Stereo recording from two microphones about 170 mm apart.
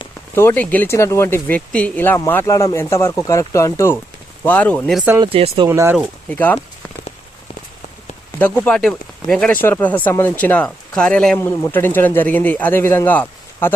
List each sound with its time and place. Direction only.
0.3 s speech: 10° left (ahead or behind)
5.2 s speech: 30° right (ahead or behind)
5.6 s speech: 15° right (ahead or behind)
6.3 s speech: 10° left (ahead or behind)
8.4 s speech: 10° left (ahead or behind)